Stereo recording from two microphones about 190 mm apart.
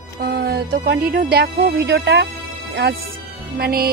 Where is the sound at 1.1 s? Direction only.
55° right (ahead or behind).